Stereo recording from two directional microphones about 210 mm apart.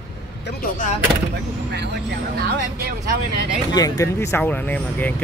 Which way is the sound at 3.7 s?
20° left (ahead or behind).